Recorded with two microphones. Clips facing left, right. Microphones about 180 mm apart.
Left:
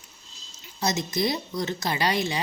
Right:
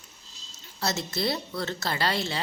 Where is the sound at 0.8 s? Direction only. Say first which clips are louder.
Left 3 dB; 15° left (ahead or behind).